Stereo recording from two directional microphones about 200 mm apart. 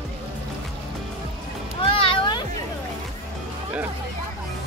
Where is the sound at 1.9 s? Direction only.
25° left (ahead or behind).